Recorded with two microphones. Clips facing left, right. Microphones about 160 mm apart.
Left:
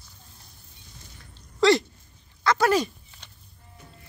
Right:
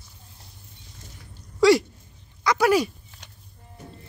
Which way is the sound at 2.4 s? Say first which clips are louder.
Right 2 dB; 10° right (ahead or behind).